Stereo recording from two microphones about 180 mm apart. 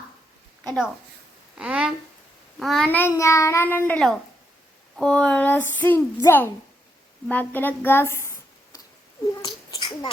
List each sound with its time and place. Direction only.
1.5 s a child's voice: 5° right (ahead or behind); by 10.1 s 25° left (ahead or behind)